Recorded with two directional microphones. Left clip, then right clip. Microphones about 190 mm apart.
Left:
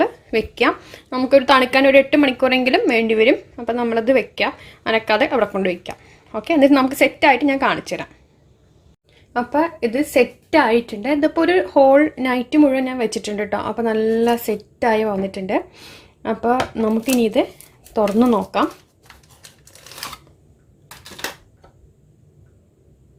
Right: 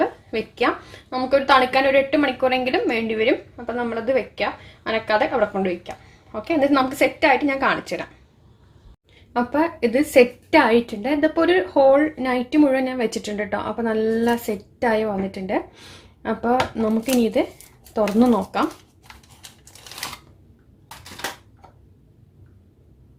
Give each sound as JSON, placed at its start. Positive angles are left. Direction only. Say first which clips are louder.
{"t": 0.0, "sound": "a woman's voice", "louder": "left 4 dB", "side_deg": 40}
{"t": 9.3, "sound": "a woman's voice", "louder": "left 2 dB", "side_deg": 15}